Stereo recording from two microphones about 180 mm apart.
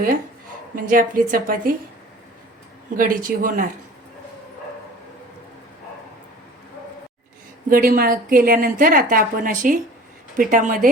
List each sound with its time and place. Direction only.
0.8 s a woman's voice: 50° right (ahead or behind)
2.9 s a woman's voice: 50° right (ahead or behind)
7.7 s a woman's voice: 55° right (ahead or behind)